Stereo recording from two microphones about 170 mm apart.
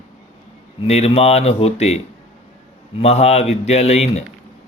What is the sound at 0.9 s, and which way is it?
Speech, 40° left (ahead or behind).